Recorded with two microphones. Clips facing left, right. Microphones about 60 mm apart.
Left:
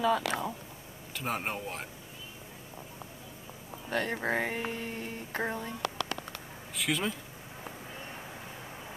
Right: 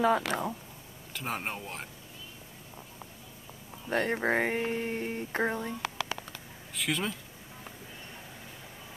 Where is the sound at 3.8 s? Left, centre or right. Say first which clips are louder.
Right 3 dB; right; by 6.2 s centre.